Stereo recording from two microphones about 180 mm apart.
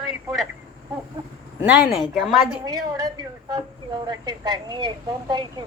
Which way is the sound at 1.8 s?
Centre (ahead or behind).